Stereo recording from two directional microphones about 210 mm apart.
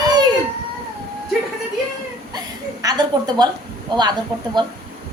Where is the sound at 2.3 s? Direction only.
20° right (ahead or behind).